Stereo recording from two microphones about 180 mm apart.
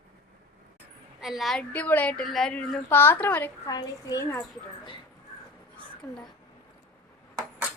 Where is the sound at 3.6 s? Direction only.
20° left (ahead or behind).